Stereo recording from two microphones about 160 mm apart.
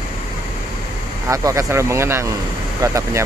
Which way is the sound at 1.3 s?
20° right (ahead or behind).